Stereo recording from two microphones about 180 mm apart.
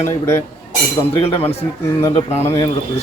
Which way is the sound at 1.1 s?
35° left (ahead or behind).